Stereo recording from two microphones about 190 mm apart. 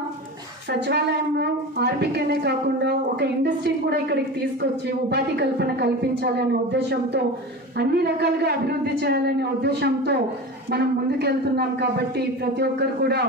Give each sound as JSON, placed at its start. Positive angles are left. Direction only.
{"t": 0.7, "sound": "a woman's voice", "side_deg": -60}